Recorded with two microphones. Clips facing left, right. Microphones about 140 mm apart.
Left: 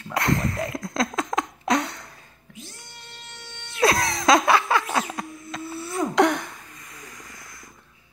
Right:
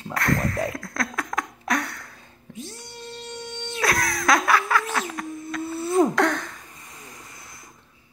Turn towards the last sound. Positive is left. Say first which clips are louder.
# left 1 dB
turn(degrees=-30)  # may be behind; listen again after turning